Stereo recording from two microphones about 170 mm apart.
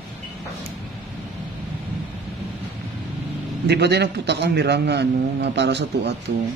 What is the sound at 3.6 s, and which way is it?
A man's voice, 80° right.